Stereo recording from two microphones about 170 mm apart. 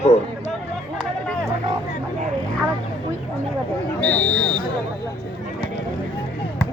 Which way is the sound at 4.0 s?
5° left (ahead or behind).